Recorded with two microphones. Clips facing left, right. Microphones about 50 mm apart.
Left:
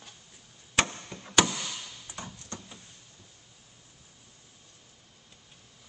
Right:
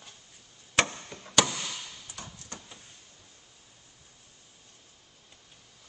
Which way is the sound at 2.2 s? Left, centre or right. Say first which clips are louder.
Left 4 dB; left.